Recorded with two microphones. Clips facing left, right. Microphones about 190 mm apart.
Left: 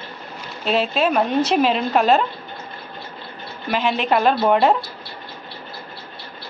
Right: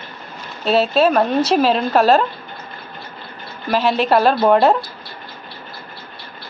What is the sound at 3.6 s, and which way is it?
Speech, 40° right (ahead or behind).